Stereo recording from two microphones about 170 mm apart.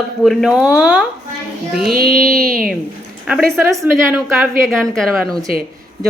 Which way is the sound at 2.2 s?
5° left (ahead or behind).